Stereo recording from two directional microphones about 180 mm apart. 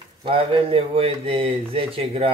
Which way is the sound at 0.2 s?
30° right (ahead or behind).